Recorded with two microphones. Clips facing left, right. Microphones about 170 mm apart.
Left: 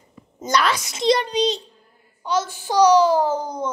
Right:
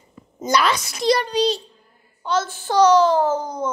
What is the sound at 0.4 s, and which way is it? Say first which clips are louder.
Speech: right 1 dB; 5° right (ahead or behind).